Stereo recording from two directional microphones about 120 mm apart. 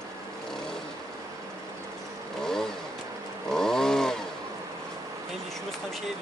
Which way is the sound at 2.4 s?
5° left (ahead or behind).